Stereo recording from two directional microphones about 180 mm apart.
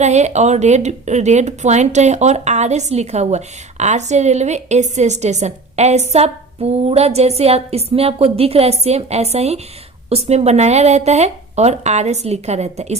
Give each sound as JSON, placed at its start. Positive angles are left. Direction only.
{"t": 0.0, "sound": "speech", "side_deg": -40}